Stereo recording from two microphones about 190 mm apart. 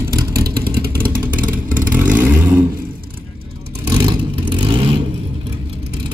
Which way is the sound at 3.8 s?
25° right (ahead or behind).